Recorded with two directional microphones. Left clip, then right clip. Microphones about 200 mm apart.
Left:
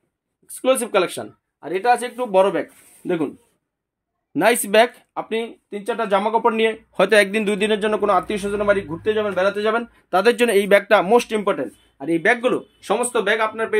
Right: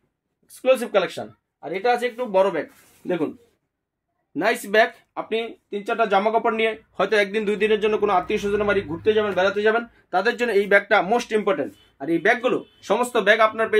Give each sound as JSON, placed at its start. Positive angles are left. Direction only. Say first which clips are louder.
{"t": 0.5, "sound": "speech", "louder": "left 1 dB", "side_deg": 50}
{"t": 4.3, "sound": "speech", "louder": "left 5 dB", "side_deg": 50}
{"t": 5.3, "sound": "speech", "louder": "right 1 dB", "side_deg": 35}
{"t": 6.9, "sound": "speech", "louder": "left 7 dB", "side_deg": 55}
{"t": 10.0, "sound": "speech", "louder": "left 6 dB", "side_deg": 55}
{"t": 13.1, "sound": "speech", "louder": "right 6 dB", "side_deg": 0}